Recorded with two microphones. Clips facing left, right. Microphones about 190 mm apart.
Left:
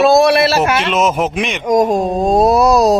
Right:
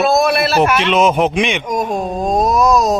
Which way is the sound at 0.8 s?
Centre (ahead or behind).